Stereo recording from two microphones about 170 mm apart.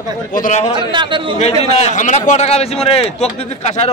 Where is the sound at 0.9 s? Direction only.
30° right (ahead or behind).